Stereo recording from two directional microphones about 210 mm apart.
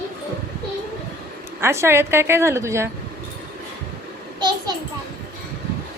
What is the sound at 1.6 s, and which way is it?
A woman's voice, 10° right (ahead or behind).